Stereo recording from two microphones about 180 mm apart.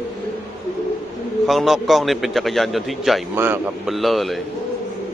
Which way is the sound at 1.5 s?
Centre (ahead or behind).